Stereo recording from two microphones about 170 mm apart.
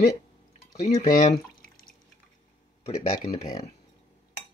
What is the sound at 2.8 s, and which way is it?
Speech, 40° left (ahead or behind).